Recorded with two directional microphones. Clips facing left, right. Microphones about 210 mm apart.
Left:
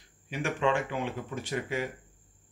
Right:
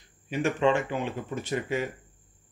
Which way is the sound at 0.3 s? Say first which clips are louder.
Right 4 dB; 25° right (ahead or behind).